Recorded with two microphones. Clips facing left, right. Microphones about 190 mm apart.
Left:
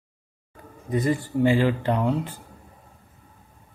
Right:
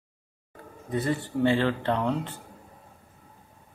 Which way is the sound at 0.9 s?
10° left (ahead or behind).